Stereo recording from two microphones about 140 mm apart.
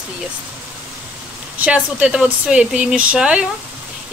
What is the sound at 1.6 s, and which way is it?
Speech, 10° right (ahead or behind).